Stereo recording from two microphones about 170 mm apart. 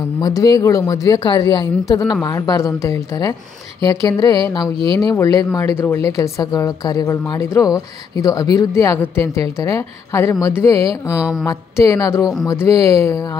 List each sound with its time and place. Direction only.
0.2 s speech: 20° left (ahead or behind)
4.7 s speech: 30° right (ahead or behind)
5.1 s speech: 20° left (ahead or behind)
11.1 s a sound: centre (ahead or behind)
11.4 s speech: 20° left (ahead or behind)